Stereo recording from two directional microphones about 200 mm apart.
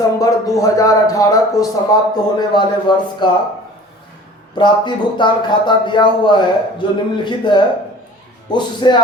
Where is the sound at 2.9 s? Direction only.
25° left (ahead or behind).